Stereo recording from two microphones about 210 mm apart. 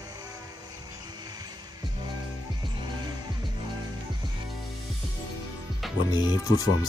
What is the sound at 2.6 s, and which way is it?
Music, 20° right (ahead or behind).